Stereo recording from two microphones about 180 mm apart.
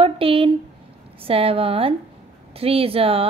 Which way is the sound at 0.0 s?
30° right (ahead or behind).